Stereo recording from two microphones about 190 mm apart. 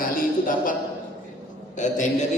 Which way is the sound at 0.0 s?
45° left (ahead or behind).